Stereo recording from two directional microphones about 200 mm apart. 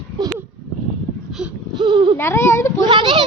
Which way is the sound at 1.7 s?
25° right (ahead or behind).